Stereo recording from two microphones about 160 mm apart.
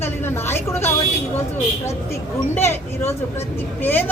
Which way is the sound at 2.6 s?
15° left (ahead or behind).